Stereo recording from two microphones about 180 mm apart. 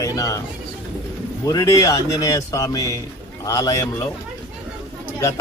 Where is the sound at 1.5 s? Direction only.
20° left (ahead or behind).